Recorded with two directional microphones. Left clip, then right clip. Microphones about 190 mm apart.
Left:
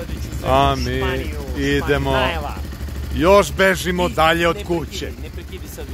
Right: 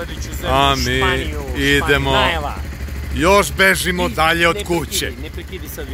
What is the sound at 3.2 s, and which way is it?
Speech, 10° left (ahead or behind).